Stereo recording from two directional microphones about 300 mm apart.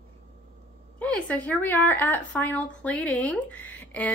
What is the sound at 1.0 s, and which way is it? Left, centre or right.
A woman's voice, centre.